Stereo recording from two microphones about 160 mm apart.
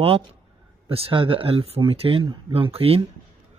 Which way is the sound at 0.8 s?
35° right (ahead or behind).